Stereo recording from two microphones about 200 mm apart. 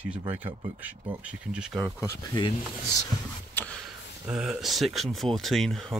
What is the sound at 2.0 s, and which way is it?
Speech, 20° left (ahead or behind).